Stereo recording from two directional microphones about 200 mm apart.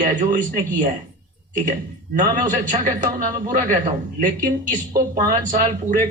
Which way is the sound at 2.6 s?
40° right (ahead or behind).